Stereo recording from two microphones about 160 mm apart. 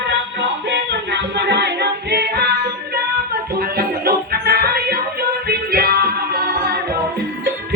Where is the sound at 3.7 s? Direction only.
75° right (ahead or behind).